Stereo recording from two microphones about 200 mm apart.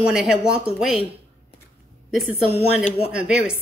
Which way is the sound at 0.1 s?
5° right (ahead or behind).